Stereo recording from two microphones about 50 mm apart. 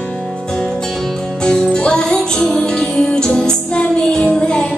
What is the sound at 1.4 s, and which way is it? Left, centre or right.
Music, centre.